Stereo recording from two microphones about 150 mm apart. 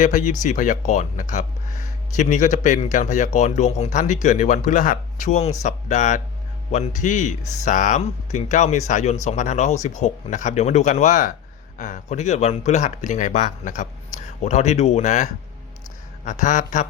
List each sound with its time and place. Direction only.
0.0 s speech: 55° left (ahead or behind)